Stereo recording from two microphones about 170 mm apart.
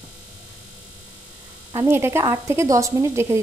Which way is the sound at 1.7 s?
15° right (ahead or behind).